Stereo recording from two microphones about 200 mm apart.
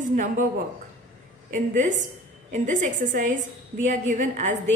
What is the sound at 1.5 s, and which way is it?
A woman's voice, 40° right (ahead or behind).